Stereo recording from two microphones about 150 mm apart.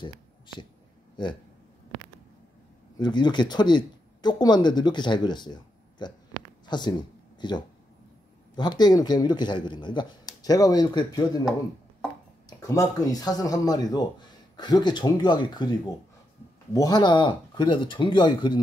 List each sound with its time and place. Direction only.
1.2 s speech: 30° left (ahead or behind)
3.0 s speech: 30° left (ahead or behind)
12.4 s speech: 25° left (ahead or behind)